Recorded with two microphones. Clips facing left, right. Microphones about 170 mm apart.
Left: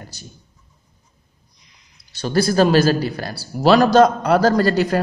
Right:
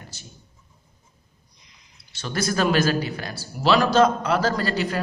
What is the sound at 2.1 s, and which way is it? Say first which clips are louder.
A man's voice: left 8 dB; 35° left (ahead or behind).